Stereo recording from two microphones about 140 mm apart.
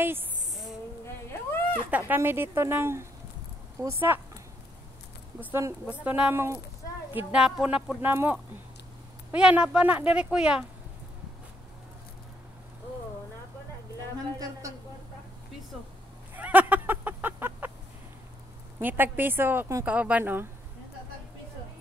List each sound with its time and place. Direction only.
0.0 s speech: 15° right (ahead or behind)
1.0 s a sound: 15° left (ahead or behind)
1.9 s speech: 10° right (ahead or behind)
5.4 s speech: 20° right (ahead or behind)
7.3 s speech: 5° right (ahead or behind)
16.3 s a sound: 10° right (ahead or behind)
18.8 s speech: 15° right (ahead or behind)